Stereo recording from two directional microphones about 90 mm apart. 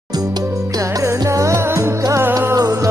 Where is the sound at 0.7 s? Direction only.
40° right (ahead or behind).